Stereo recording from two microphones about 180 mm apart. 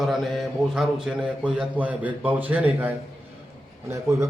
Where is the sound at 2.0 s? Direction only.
10° right (ahead or behind).